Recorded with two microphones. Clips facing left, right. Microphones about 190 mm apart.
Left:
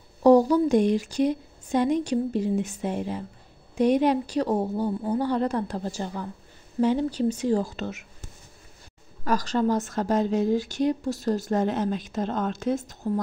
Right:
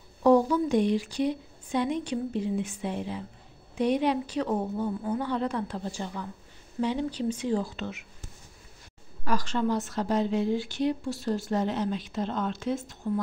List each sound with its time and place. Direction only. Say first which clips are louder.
0.2 s speech: left 4 dB; 35° left (ahead or behind)
9.2 s speech: left 4 dB; 40° left (ahead or behind)